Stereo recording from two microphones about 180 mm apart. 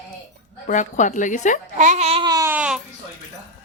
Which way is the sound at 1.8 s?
40° right (ahead or behind).